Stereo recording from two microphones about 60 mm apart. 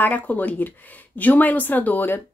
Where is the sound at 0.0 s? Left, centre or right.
Left.